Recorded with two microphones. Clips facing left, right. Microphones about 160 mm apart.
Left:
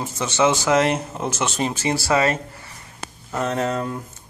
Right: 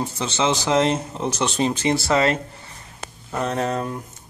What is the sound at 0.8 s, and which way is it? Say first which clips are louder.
Speech: even; 15° left (ahead or behind).